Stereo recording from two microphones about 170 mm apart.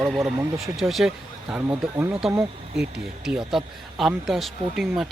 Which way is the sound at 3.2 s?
5° right (ahead or behind).